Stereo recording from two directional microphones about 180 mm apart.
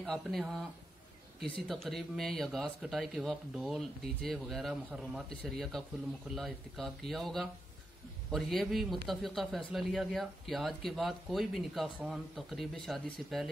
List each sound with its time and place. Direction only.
0.0 s speech: centre (ahead or behind)
1.7 s speech: centre (ahead or behind)